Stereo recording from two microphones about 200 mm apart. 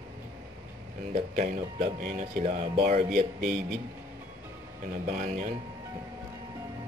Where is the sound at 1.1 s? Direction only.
30° right (ahead or behind).